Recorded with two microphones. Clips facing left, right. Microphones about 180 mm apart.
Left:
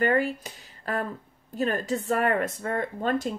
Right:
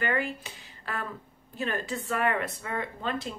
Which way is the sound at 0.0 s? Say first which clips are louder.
Left 6 dB; 40° left (ahead or behind).